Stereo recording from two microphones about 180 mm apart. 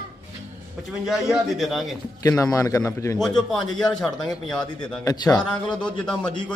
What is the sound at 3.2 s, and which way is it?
Speech, 5° left (ahead or behind).